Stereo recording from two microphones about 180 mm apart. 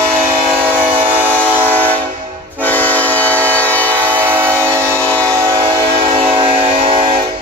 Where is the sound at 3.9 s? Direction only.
10° right (ahead or behind).